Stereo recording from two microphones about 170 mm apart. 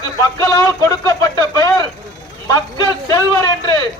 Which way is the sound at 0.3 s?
20° left (ahead or behind).